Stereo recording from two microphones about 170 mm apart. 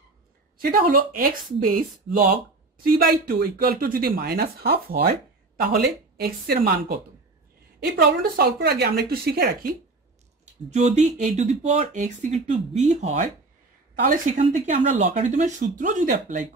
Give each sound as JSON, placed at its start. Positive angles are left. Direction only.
{"t": 0.6, "sound": "speech", "side_deg": -60}
{"t": 10.7, "sound": "speech", "side_deg": -40}
{"t": 14.0, "sound": "speech", "side_deg": -50}